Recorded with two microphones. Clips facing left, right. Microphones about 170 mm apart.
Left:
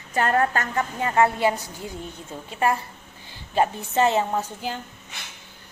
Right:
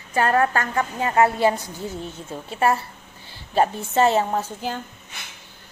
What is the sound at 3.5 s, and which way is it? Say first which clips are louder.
Speech: right 2 dB; 35° right (ahead or behind).